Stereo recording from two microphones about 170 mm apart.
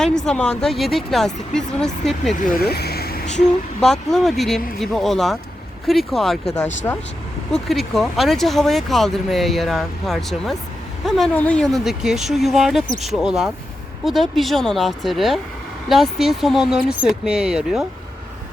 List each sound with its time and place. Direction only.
0.3 s speech: 5° left (ahead or behind)
2.4 s vehicle: 65° left (ahead or behind)
4.1 s speech: centre (ahead or behind)
6.8 s speech: 15° left (ahead or behind)
7.5 s speech: centre (ahead or behind)